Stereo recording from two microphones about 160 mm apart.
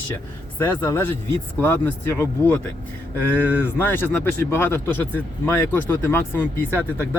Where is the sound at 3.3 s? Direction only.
10° right (ahead or behind).